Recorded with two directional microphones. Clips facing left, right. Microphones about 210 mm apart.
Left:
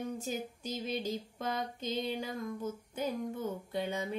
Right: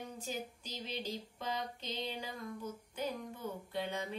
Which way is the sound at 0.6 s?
45° left (ahead or behind).